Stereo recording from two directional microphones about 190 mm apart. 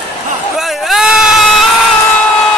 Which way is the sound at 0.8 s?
Centre (ahead or behind).